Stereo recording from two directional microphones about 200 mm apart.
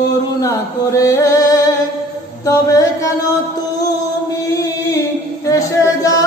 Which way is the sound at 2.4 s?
15° left (ahead or behind).